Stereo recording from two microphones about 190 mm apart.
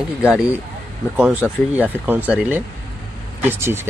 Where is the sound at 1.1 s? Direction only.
5° right (ahead or behind).